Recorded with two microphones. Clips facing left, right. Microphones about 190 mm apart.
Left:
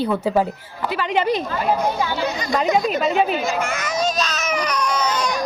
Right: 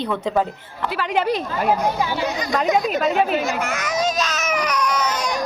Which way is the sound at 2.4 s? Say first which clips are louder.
Left 1 dB; centre (ahead or behind).